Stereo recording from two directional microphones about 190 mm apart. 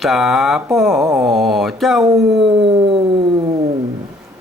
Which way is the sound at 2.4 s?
30° right (ahead or behind).